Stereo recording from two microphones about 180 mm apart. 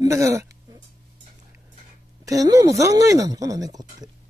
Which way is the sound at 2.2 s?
20° right (ahead or behind).